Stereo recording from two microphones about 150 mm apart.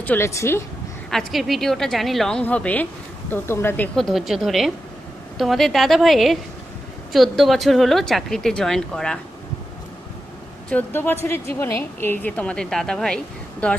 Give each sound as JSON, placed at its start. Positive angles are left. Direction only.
{"t": 0.0, "sound": "a woman's voice", "side_deg": 15}
{"t": 1.1, "sound": "a woman's voice", "side_deg": 0}
{"t": 3.9, "sound": "speech", "side_deg": 0}
{"t": 10.7, "sound": "a woman's voice", "side_deg": 10}